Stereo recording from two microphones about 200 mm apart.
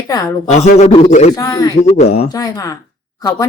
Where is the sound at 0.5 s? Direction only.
35° left (ahead or behind).